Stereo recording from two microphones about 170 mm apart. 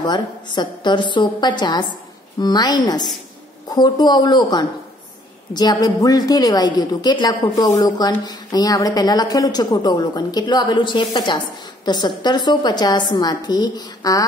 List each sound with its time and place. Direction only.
0.0 s a woman's voice: 25° left (ahead or behind)